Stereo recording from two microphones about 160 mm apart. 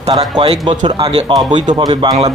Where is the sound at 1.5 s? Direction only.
50° right (ahead or behind).